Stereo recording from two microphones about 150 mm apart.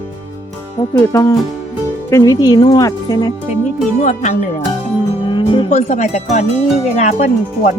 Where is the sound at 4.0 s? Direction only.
60° left (ahead or behind).